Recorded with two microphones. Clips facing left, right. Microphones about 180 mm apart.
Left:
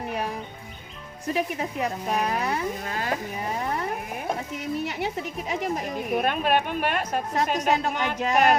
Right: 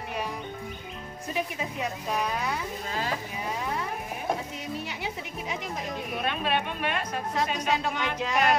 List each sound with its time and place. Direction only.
1.6 s speech: 60° left (ahead or behind)
4.8 s speech: 60° left (ahead or behind)
6.1 s a woman's voice: 50° left (ahead or behind)